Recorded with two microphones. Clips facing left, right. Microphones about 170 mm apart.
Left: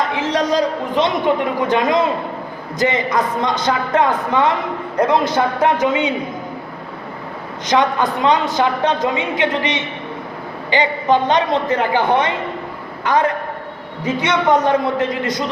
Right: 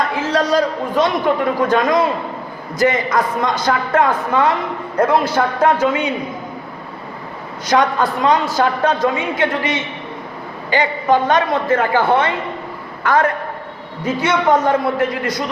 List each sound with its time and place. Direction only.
0.2 s a man's voice: 20° left (ahead or behind)
7.7 s a woman's voice: 20° left (ahead or behind)